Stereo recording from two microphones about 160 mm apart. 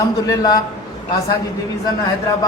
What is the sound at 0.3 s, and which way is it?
Speech, 20° left (ahead or behind).